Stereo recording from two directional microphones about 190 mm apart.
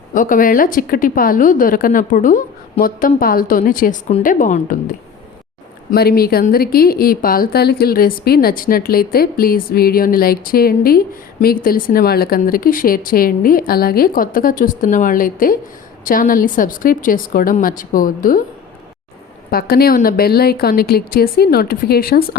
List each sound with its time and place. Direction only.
0.1 s a woman's voice: 45° left (ahead or behind)
5.9 s a woman's voice: 55° left (ahead or behind)
19.5 s a woman's voice: 55° left (ahead or behind)